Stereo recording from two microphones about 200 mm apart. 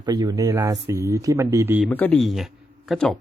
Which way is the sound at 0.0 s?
20° right (ahead or behind).